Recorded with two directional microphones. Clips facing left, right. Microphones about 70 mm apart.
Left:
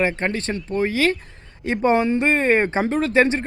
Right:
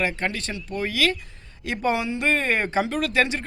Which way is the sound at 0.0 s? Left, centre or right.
Left.